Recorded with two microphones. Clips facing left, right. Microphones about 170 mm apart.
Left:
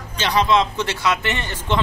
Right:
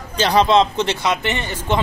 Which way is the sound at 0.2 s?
35° right (ahead or behind).